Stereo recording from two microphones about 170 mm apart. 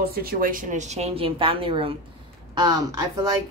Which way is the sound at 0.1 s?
60° right (ahead or behind).